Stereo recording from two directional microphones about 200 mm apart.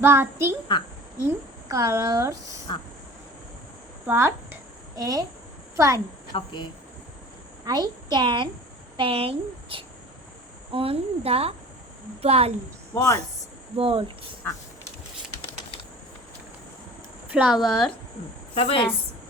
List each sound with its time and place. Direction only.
0.0 s a woman's voice: 10° right (ahead or behind)
2.7 s speech: 25° left (ahead or behind)
4.0 s a woman's voice: 10° right (ahead or behind)
6.3 s speech: 25° left (ahead or behind)
7.6 s a woman's voice: 20° right (ahead or behind)
12.9 s speech: 15° left (ahead or behind)
13.7 s a woman's voice: 25° right (ahead or behind)
17.2 s a woman's voice: 5° right (ahead or behind)
18.5 s a woman's voice: 30° left (ahead or behind)